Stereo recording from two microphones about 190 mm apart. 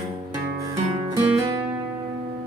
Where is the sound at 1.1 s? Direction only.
25° right (ahead or behind).